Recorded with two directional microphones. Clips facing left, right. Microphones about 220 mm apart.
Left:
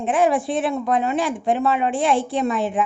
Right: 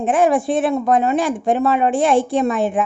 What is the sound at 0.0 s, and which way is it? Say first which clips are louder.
A woman's voice: right 3 dB; 45° right (ahead or behind).